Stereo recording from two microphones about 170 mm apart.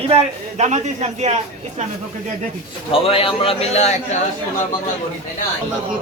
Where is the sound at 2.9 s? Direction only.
35° left (ahead or behind).